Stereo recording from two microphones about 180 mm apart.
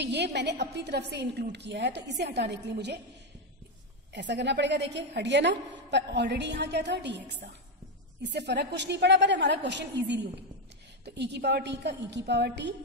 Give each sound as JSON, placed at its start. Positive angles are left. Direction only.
{"t": 0.0, "sound": "a woman's voice", "side_deg": -70}
{"t": 4.1, "sound": "a woman's voice", "side_deg": -75}